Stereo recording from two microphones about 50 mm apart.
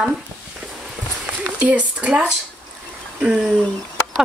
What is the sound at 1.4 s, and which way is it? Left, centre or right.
Speech, right.